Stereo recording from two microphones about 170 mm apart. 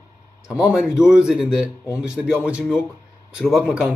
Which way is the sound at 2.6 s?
5° left (ahead or behind).